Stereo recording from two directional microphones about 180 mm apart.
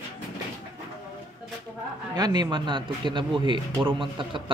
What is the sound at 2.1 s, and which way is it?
Speech, 20° right (ahead or behind).